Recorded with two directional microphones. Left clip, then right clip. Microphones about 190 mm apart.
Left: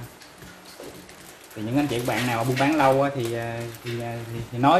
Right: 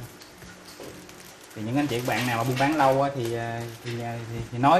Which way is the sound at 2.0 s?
Centre (ahead or behind).